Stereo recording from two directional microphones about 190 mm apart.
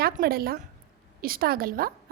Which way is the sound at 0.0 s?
50° right (ahead or behind).